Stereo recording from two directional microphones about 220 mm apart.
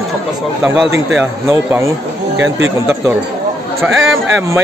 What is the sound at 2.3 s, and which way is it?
Speech, 60° right (ahead or behind).